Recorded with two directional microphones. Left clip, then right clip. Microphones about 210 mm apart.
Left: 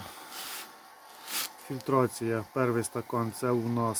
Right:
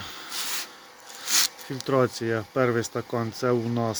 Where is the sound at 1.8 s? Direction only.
5° left (ahead or behind).